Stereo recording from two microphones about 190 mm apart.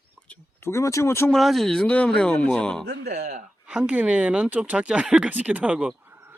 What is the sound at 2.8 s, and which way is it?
Speech, 55° right (ahead or behind).